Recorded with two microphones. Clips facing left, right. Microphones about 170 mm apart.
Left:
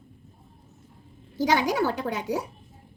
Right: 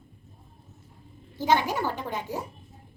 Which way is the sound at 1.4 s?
90° left.